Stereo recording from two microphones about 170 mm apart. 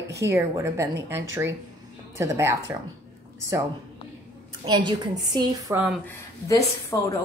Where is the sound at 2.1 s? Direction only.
15° right (ahead or behind).